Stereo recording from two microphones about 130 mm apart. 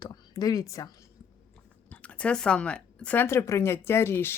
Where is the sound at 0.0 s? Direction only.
30° left (ahead or behind).